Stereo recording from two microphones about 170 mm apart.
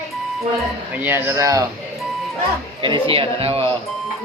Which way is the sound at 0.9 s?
10° right (ahead or behind).